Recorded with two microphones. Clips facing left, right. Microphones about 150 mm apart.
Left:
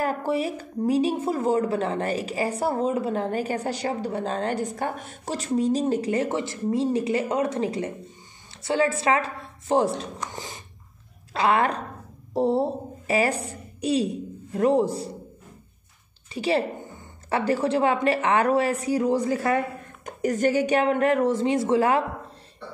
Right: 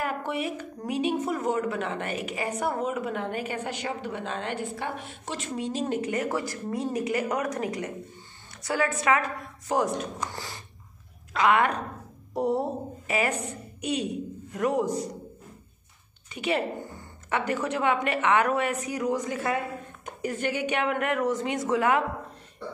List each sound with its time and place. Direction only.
0.0 s a woman's voice: 35° left (ahead or behind)
11.3 s a woman's voice: 30° left (ahead or behind)
16.3 s a woman's voice: 30° left (ahead or behind)